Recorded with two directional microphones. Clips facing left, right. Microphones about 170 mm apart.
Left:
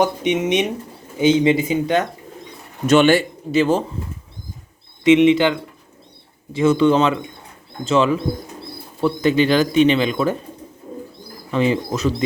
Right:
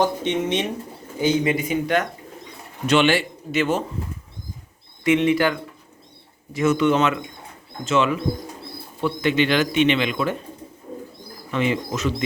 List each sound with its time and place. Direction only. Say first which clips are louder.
0.0 s speech: left 3 dB; 15° left (ahead or behind)
2.8 s speech: left 5 dB; 45° left (ahead or behind)
3.5 s speech: left 5 dB; 30° left (ahead or behind)
5.0 s speech: left 6 dB; 20° left (ahead or behind); by 10.3 s 35° left (ahead or behind)
11.5 s speech: left 4 dB; 35° left (ahead or behind)